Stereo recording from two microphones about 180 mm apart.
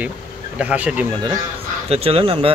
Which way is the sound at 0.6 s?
5° right (ahead or behind).